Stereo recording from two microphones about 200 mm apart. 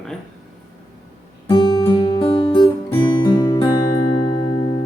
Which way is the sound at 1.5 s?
25° left (ahead or behind).